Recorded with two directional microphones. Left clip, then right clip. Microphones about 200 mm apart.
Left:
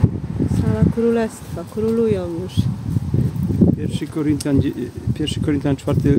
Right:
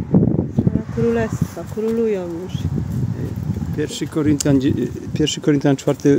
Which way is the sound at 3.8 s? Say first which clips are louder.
Right 3 dB; 50° right (ahead or behind).